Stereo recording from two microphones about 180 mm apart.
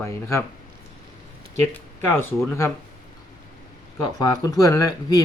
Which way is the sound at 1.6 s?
15° left (ahead or behind).